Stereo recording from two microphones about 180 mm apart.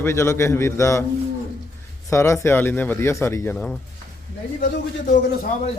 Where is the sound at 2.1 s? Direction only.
15° left (ahead or behind).